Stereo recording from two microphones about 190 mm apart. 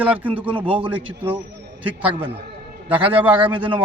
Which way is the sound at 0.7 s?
25° right (ahead or behind).